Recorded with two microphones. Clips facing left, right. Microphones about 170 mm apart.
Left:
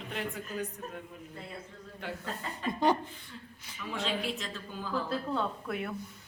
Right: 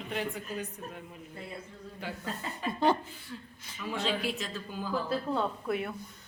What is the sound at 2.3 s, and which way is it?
Speech, 15° left (ahead or behind).